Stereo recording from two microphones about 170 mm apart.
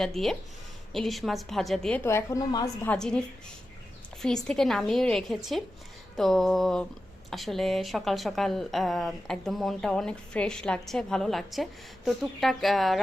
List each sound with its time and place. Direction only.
0.0 s a woman's voice: centre (ahead or behind)
2.0 s a woman's voice: 15° left (ahead or behind)
2.8 s a woman's voice: 5° left (ahead or behind)
4.4 s a woman's voice: centre (ahead or behind)